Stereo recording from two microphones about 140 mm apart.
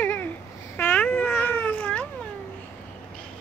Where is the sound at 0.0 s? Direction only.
15° left (ahead or behind).